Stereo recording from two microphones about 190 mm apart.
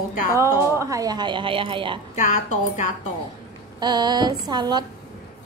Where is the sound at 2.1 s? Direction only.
40° left (ahead or behind).